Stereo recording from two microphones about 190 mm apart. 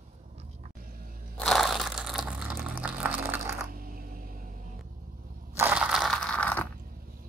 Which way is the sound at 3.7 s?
50° right (ahead or behind).